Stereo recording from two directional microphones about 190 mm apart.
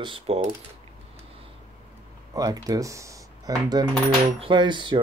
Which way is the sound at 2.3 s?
20° right (ahead or behind).